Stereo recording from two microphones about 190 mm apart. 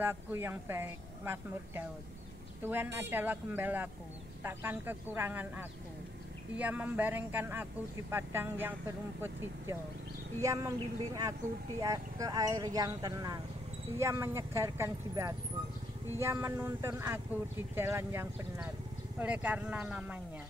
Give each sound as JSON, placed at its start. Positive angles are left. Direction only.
{"t": 0.0, "sound": "speech", "side_deg": -10}
{"t": 11.8, "sound": "speech", "side_deg": -20}